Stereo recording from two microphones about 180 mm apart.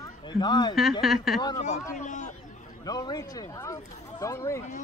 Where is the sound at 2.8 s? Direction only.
20° left (ahead or behind).